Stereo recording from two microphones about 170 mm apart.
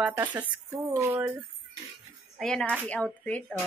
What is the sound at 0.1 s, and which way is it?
Speech, 10° right (ahead or behind).